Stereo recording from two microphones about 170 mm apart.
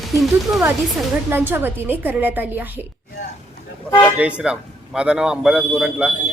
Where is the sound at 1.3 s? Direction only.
10° right (ahead or behind).